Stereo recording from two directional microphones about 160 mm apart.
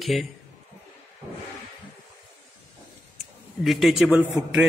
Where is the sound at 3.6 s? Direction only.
Centre (ahead or behind).